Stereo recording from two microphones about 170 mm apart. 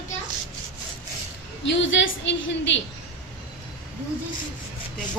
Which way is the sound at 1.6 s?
90° left.